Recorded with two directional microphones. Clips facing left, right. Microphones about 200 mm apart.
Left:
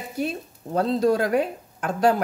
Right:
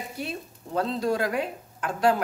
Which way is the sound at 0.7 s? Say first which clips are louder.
Left 5 dB; 40° left (ahead or behind).